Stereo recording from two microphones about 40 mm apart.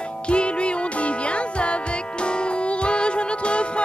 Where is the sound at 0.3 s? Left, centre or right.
Left.